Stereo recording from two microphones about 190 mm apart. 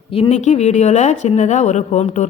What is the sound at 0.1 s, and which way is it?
A woman's voice, 30° left (ahead or behind).